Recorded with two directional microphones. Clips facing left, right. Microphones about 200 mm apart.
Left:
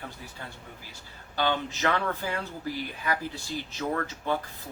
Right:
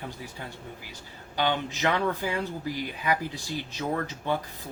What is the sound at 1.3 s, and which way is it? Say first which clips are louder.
Speech: right 1 dB; 15° right (ahead or behind).